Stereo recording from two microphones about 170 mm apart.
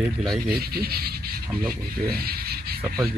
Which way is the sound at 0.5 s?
65° right (ahead or behind).